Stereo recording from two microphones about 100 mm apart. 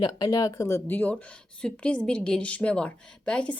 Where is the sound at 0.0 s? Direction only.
40° left (ahead or behind).